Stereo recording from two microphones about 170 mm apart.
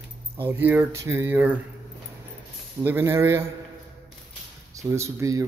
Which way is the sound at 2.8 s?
15° right (ahead or behind).